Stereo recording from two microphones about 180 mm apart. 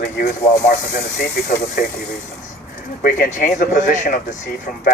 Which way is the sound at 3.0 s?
45° left (ahead or behind).